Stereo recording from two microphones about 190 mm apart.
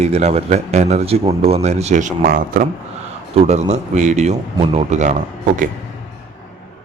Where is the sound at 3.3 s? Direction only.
35° right (ahead or behind).